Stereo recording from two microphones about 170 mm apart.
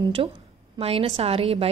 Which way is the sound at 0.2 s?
30° right (ahead or behind).